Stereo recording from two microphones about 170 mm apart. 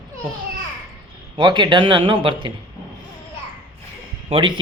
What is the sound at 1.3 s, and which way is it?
A man's voice, 25° right (ahead or behind).